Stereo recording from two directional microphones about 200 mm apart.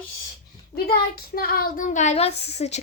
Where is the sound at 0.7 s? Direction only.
50° left (ahead or behind).